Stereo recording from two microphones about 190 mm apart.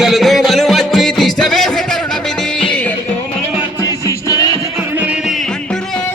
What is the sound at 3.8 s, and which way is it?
Music, 15° left (ahead or behind).